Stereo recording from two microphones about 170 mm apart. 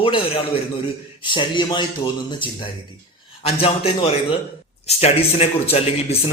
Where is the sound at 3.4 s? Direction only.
35° left (ahead or behind).